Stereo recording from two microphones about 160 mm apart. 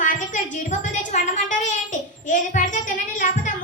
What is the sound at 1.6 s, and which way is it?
Child singing, 50° left (ahead or behind).